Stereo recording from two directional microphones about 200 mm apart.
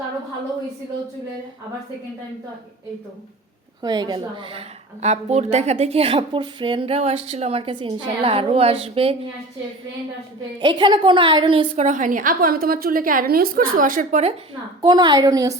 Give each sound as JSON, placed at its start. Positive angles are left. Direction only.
{"t": 3.8, "sound": "a woman's voice", "side_deg": -20}
{"t": 10.6, "sound": "a woman's voice", "side_deg": -25}
{"t": 14.8, "sound": "a woman's voice", "side_deg": -20}